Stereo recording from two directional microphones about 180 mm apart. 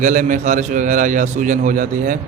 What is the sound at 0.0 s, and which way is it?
Speech, 45° right (ahead or behind).